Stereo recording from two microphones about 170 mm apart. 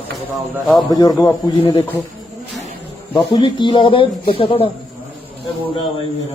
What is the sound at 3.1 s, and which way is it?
A man's voice, 25° left (ahead or behind).